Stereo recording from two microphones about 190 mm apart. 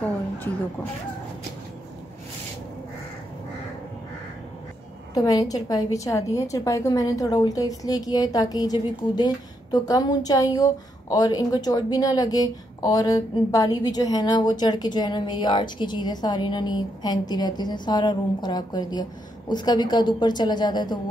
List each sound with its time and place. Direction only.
5.1 s a woman's voice: 20° left (ahead or behind)